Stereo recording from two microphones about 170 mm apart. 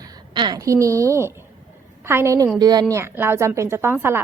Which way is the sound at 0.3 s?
25° right (ahead or behind).